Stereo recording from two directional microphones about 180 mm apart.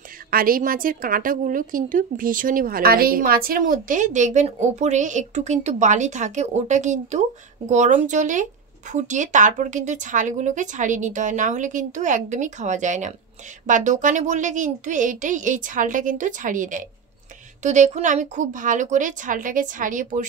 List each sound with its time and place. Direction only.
0.3 s a woman's voice: 55° right (ahead or behind)